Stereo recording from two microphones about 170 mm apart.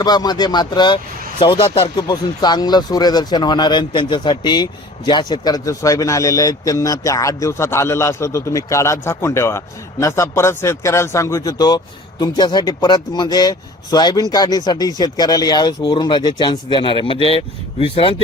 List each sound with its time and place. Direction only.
0.0 s speech: 25° left (ahead or behind)